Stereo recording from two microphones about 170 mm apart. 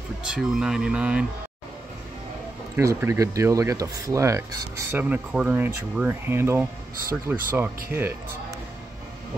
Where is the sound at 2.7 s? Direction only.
15° right (ahead or behind).